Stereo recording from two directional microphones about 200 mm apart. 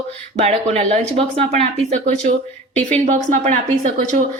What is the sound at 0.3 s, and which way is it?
Speech, 35° right (ahead or behind).